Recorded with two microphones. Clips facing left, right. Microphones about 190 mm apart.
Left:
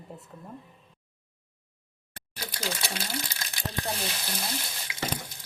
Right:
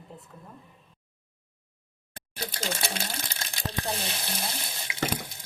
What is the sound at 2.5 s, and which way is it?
Speech, 25° right (ahead or behind).